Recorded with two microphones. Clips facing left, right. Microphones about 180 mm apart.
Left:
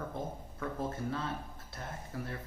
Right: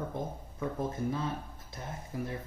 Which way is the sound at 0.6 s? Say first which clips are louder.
Right 3 dB; 15° right (ahead or behind).